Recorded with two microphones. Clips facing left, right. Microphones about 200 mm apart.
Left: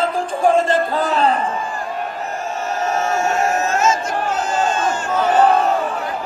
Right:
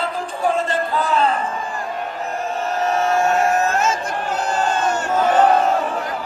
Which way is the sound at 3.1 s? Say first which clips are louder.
Right 2 dB; 55° right (ahead or behind).